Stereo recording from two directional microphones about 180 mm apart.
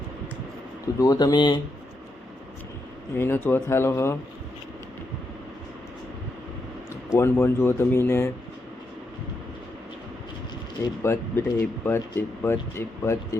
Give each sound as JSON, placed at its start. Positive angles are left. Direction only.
{"t": 0.9, "sound": "speech", "side_deg": 20}
{"t": 3.2, "sound": "speech", "side_deg": 10}
{"t": 7.2, "sound": "speech", "side_deg": 15}
{"t": 10.8, "sound": "speech", "side_deg": 15}